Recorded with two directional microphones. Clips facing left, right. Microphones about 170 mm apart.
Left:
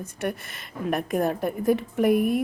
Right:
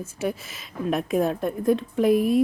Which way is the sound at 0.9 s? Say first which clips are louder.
Right 1 dB; centre (ahead or behind).